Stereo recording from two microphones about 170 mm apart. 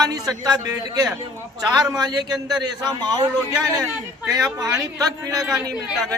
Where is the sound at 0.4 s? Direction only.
25° right (ahead or behind).